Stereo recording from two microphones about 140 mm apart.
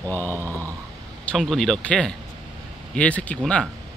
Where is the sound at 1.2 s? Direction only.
Centre (ahead or behind).